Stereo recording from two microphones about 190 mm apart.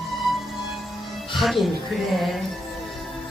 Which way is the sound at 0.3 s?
Centre (ahead or behind).